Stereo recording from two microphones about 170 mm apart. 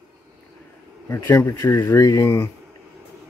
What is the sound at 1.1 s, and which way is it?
Speech, 15° left (ahead or behind).